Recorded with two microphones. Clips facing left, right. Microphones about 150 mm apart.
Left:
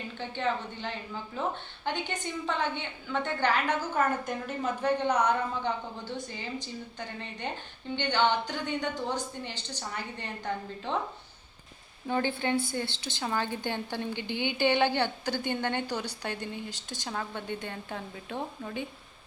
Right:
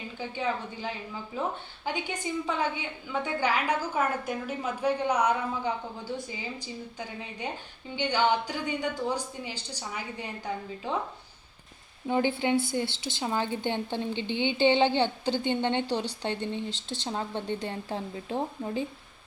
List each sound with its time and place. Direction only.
0.2 s a woman's voice: 5° right (ahead or behind)
12.0 s a woman's voice: 15° right (ahead or behind)
16.6 s speech: 10° left (ahead or behind)
17.0 s a woman's voice: 25° right (ahead or behind)